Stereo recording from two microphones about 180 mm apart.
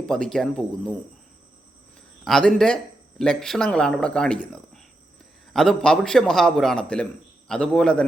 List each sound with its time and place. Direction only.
0.0 s speech: 5° left (ahead or behind)
2.2 s speech: 5° left (ahead or behind)